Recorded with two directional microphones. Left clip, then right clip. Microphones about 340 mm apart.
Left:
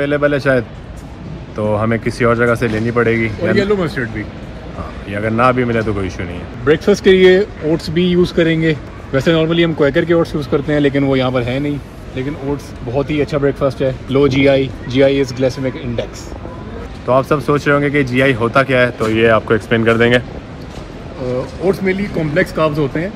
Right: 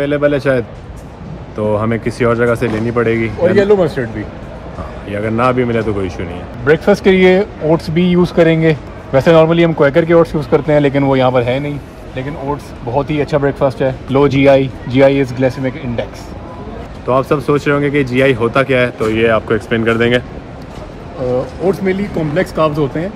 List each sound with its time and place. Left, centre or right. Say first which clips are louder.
0.0 s speech: right 1 dB; centre
3.5 s speech: right 5 dB; centre
5.1 s speech: even; centre
6.8 s speech: left 2 dB; centre
12.9 s speech: right 2 dB; right
15.2 s speech: right 1 dB; right
17.1 s speech: even; centre
21.8 s speech: right 1 dB; centre